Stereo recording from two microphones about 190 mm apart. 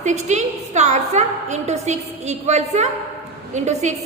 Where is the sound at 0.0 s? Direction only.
40° right (ahead or behind).